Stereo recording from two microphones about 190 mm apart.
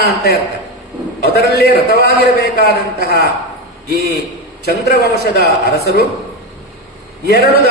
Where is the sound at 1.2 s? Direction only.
60° left (ahead or behind).